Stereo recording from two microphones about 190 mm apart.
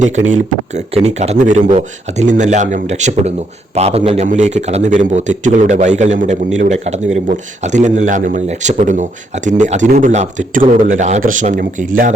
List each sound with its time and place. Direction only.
0.0 s a man's voice: 40° right (ahead or behind)